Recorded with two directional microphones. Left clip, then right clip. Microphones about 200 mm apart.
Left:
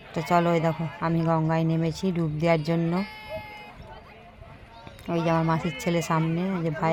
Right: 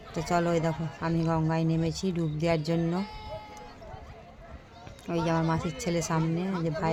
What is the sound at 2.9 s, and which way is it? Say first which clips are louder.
Sheep: left 4 dB; 15° left (ahead or behind).